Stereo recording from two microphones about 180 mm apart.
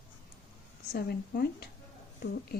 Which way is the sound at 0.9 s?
60° left (ahead or behind).